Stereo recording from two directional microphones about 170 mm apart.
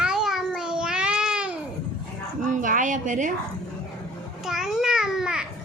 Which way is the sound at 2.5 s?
50° right (ahead or behind).